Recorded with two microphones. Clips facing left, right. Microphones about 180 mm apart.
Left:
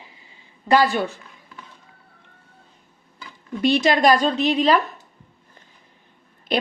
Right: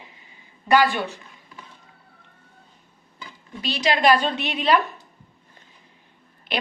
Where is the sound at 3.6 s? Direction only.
50° left (ahead or behind).